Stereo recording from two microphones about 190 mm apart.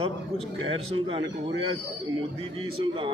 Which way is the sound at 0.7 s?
30° right (ahead or behind).